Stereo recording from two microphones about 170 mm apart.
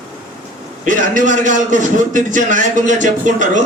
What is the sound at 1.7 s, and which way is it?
A man's voice, 50° right (ahead or behind).